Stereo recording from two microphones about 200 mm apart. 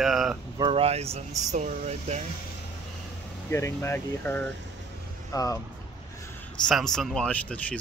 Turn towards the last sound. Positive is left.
turn(degrees=5)  # may be behind; listen again after turning